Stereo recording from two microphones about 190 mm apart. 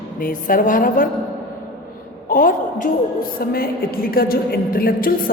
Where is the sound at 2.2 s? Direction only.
45° left (ahead or behind).